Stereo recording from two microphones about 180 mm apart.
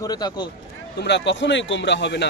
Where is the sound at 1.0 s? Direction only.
75° left (ahead or behind).